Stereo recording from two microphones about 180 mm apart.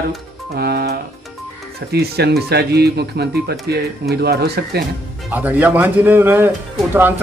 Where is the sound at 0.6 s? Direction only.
65° right (ahead or behind).